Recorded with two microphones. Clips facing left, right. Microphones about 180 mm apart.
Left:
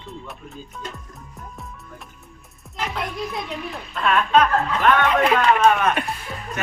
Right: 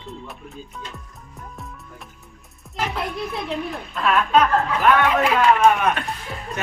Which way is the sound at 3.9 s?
Centre (ahead or behind).